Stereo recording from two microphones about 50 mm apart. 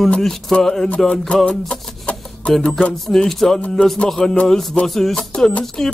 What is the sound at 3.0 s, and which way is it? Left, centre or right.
Music, centre.